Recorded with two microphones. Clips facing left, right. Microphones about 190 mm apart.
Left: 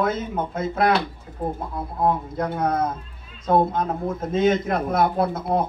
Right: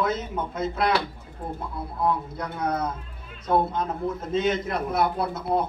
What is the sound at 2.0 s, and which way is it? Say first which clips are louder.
Speech: left 4 dB; 50° left (ahead or behind).